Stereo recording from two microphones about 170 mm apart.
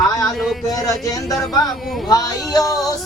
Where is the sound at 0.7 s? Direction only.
20° left (ahead or behind).